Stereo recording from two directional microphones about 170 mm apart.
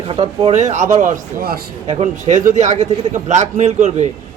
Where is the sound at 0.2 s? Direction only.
40° right (ahead or behind).